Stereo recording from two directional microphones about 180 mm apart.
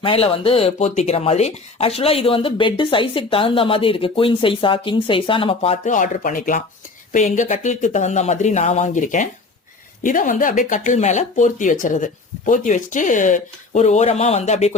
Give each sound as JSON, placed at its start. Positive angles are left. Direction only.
{"t": 0.0, "sound": "speech", "side_deg": 30}